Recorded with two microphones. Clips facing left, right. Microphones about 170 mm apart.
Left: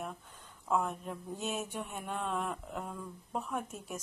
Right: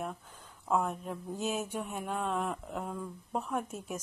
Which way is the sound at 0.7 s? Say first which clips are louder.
Right 2 dB; 5° right (ahead or behind).